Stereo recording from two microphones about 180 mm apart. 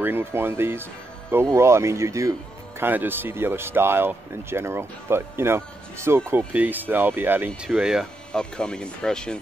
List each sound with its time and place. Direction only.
0.0 s speech: 10° right (ahead or behind); by 9.4 s 5° left (ahead or behind)